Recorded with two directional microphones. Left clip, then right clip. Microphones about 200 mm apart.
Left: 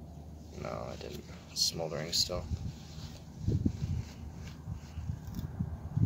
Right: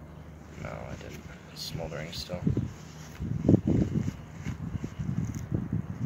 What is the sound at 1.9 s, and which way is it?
Speech, 20° left (ahead or behind).